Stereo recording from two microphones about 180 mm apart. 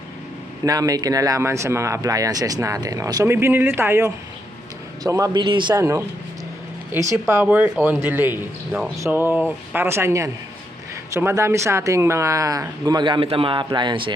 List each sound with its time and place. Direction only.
0.6 s speech: 20° right (ahead or behind)